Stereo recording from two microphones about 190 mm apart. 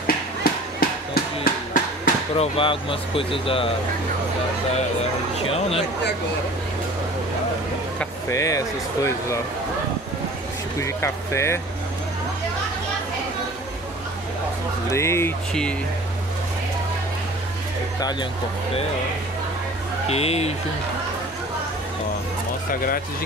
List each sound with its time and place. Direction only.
0.0 s a sound: 50° left (ahead or behind)
2.3 s speech: 30° left (ahead or behind)
8.0 s speech: 15° left (ahead or behind)
10.8 s speech: 15° left (ahead or behind)
14.9 s speech: 15° left (ahead or behind)
20.1 s speech: 35° left (ahead or behind)